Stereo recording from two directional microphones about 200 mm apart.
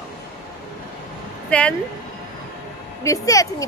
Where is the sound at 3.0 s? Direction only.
15° left (ahead or behind).